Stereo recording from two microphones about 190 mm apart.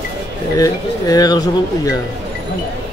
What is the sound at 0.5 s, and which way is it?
Speech, 20° left (ahead or behind).